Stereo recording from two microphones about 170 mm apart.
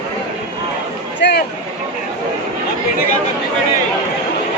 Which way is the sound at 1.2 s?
80° left.